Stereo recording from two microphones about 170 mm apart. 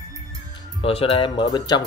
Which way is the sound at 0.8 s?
35° left (ahead or behind).